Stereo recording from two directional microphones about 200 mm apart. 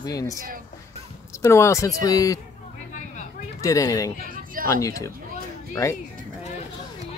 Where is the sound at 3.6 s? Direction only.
15° left (ahead or behind).